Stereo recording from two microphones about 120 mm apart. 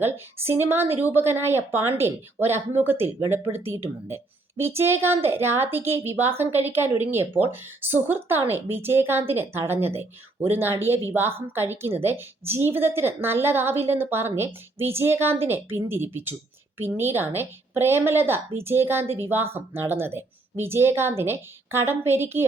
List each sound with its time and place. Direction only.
0.0 s a woman's voice: 20° right (ahead or behind)